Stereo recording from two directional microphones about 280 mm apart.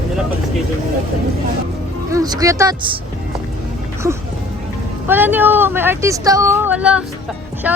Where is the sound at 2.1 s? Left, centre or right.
Centre.